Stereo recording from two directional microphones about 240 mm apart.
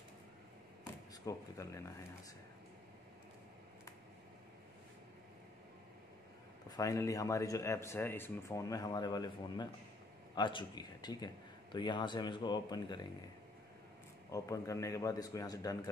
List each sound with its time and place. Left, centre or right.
1.2 s speech: centre
6.7 s speech: centre
14.3 s speech: centre